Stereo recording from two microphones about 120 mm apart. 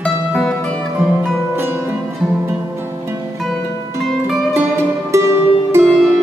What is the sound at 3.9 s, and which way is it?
Music, centre (ahead or behind).